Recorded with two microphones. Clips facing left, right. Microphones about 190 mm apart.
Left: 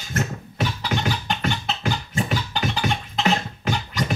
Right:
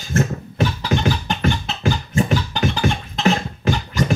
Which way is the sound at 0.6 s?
45° right (ahead or behind).